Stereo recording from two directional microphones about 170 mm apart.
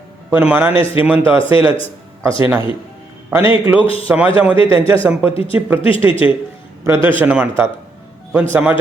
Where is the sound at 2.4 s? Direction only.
15° right (ahead or behind).